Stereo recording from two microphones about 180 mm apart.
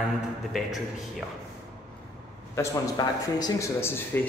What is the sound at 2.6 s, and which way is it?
Speech, 20° left (ahead or behind).